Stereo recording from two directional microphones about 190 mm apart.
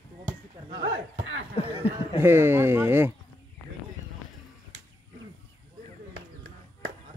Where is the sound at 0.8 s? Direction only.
75° right (ahead or behind).